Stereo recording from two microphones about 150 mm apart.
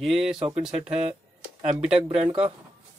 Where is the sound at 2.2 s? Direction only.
40° right (ahead or behind).